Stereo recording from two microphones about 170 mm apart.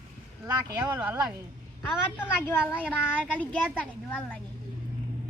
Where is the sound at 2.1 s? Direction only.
10° left (ahead or behind).